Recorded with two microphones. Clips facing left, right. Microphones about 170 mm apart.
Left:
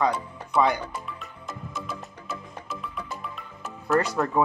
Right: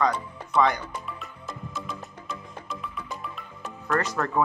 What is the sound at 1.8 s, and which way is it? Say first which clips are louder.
Music: left 1 dB; 5° left (ahead or behind).